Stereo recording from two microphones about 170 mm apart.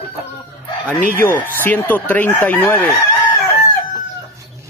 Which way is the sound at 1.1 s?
10° left (ahead or behind).